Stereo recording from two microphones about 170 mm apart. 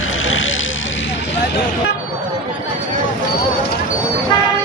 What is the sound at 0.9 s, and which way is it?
Vehicle, 90° left.